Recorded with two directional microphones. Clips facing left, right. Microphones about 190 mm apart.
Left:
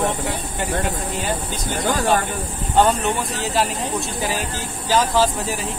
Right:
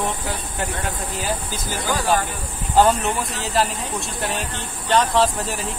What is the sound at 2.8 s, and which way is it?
Speech, centre (ahead or behind).